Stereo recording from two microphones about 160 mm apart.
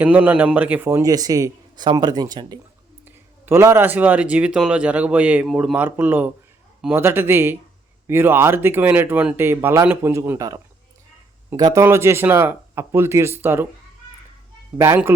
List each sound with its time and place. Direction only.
0.0 s a man's voice: 10° right (ahead or behind); by 2.6 s 25° right (ahead or behind)
3.4 s speech: 15° right (ahead or behind)
14.8 s speech: 15° right (ahead or behind)